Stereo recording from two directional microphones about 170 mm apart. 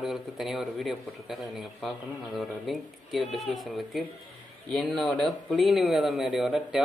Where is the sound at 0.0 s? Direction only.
Centre (ahead or behind).